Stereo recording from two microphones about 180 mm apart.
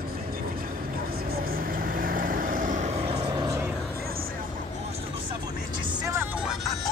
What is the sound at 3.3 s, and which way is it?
Vehicle, 15° right (ahead or behind).